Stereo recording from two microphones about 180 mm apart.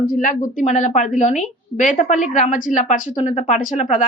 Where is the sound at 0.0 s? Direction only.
45° left (ahead or behind).